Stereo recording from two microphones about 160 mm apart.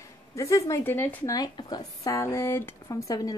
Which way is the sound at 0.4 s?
20° left (ahead or behind).